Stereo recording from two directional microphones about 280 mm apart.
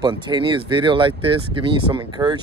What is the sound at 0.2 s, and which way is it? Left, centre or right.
Speech, centre.